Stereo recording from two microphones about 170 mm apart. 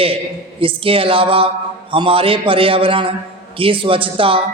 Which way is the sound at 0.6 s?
30° right (ahead or behind).